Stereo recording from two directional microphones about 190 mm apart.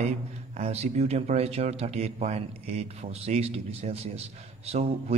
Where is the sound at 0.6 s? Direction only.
35° right (ahead or behind).